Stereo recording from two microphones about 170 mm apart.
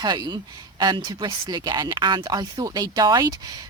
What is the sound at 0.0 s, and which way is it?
Speech, 25° right (ahead or behind).